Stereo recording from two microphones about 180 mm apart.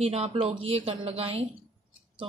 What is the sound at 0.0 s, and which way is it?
A woman's voice, 35° right (ahead or behind).